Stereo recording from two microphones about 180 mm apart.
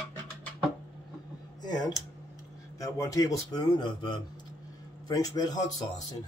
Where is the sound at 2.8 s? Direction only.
20° left (ahead or behind).